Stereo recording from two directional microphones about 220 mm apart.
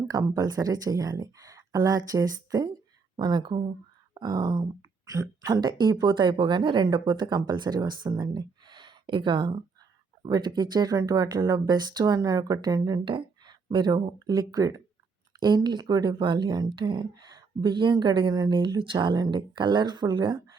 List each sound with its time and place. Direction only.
0.1 s speech: 15° right (ahead or behind)